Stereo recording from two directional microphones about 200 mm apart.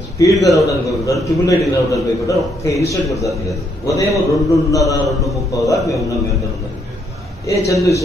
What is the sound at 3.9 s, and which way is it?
A man's voice, 15° left (ahead or behind).